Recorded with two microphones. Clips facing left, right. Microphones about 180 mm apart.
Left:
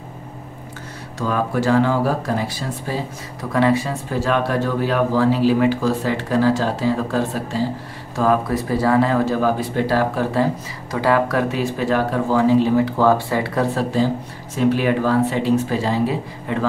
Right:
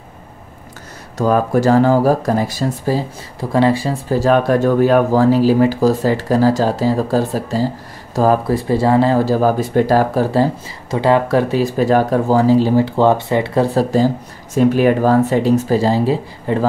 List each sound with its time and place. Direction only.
1.1 s speech: 45° right (ahead or behind); by 13.7 s 25° right (ahead or behind)
14.5 s speech: 45° right (ahead or behind)